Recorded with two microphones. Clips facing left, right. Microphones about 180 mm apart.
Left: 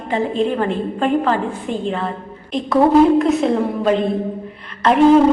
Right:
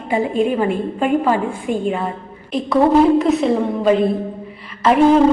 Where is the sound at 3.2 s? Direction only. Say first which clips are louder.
Even; centre (ahead or behind).